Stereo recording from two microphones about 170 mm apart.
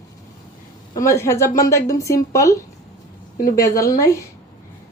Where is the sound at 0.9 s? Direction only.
15° left (ahead or behind).